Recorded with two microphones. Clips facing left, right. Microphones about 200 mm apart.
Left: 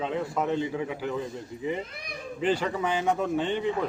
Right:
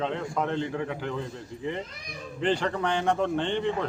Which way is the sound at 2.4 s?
5° left (ahead or behind).